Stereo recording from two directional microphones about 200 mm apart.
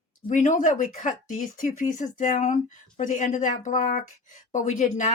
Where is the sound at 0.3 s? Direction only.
40° left (ahead or behind).